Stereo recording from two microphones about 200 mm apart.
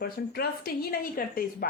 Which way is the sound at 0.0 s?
50° left (ahead or behind).